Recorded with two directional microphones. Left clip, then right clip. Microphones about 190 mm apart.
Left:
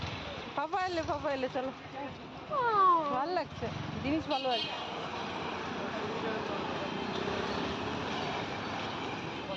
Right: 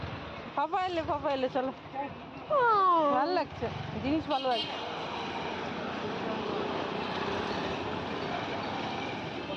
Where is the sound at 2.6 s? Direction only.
55° right (ahead or behind).